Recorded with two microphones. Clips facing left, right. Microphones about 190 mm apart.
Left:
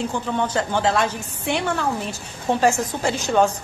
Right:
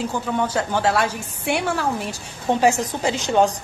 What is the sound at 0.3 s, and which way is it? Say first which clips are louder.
Speech: right 1 dB; 5° right (ahead or behind).